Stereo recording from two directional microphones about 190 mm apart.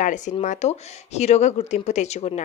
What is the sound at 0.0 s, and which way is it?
A woman's voice, 40° left (ahead or behind).